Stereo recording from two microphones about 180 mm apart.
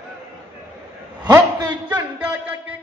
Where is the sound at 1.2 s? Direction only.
25° right (ahead or behind).